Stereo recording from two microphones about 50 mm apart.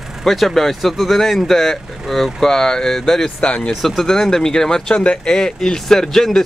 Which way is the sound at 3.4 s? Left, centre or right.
Left.